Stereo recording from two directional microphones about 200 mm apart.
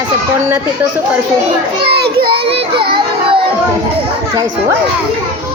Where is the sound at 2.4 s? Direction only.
30° right (ahead or behind).